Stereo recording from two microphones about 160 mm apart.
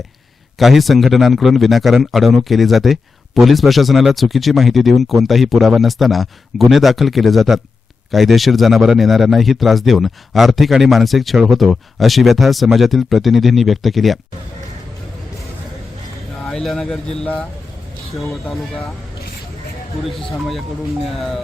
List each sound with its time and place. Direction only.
0.6 s a man's voice: centre (ahead or behind)
16.5 s a man's voice: 5° left (ahead or behind)
20.1 s a man's voice: centre (ahead or behind)